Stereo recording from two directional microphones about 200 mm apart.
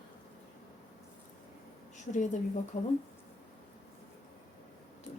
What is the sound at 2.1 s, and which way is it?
Speech, 40° left (ahead or behind).